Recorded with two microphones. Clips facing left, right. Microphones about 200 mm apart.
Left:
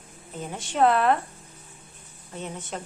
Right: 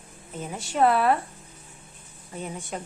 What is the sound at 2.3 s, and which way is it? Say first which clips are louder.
Speech: right 1 dB; 10° right (ahead or behind).